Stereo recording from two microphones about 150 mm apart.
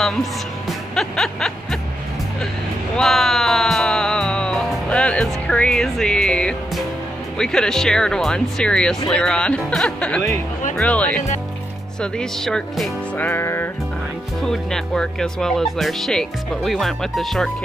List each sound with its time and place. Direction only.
0.0 s speech: centre (ahead or behind)
0.9 s music: 5° left (ahead or behind)
3.0 s music: centre (ahead or behind)
7.3 s speech: 5° left (ahead or behind)
13.2 s speech: 15° left (ahead or behind)
14.4 s speech: 5° left (ahead or behind)